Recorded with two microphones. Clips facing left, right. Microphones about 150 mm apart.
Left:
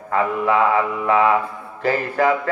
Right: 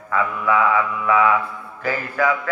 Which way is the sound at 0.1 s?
30° left (ahead or behind).